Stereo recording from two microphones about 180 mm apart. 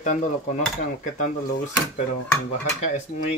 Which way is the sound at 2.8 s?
40° left (ahead or behind).